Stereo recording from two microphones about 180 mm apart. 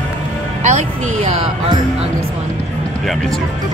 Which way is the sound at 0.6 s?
40° right (ahead or behind).